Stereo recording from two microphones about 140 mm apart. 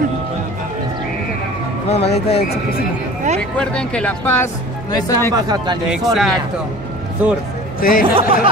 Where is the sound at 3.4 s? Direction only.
5° left (ahead or behind).